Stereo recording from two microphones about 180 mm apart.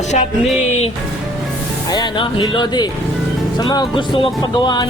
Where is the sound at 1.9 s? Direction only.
25° left (ahead or behind).